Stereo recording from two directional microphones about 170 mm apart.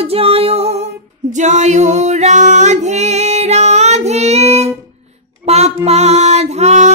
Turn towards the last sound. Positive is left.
turn(degrees=-40)  # may be behind; listen again after turning